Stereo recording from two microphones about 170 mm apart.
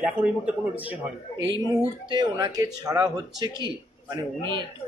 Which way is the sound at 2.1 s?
25° right (ahead or behind).